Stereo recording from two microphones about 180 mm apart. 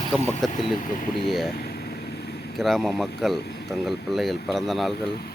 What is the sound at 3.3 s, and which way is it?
Speech, 65° left (ahead or behind).